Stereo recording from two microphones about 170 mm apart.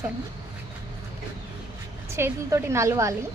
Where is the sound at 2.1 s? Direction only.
15° right (ahead or behind).